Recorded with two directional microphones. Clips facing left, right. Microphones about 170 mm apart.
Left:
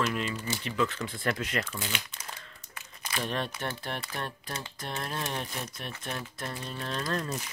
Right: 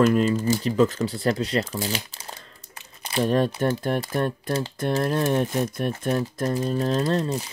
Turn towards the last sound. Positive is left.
turn(degrees=-30)  # may be behind; listen again after turning